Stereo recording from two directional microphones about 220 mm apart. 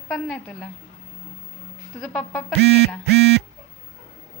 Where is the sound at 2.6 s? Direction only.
50° right (ahead or behind).